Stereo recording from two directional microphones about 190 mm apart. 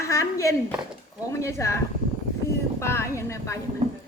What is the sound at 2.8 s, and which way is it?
Speech, 15° left (ahead or behind).